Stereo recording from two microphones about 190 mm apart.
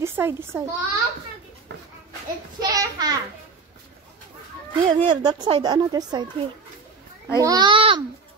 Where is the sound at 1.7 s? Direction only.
65° right (ahead or behind).